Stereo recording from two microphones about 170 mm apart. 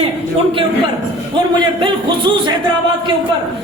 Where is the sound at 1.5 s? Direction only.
30° right (ahead or behind).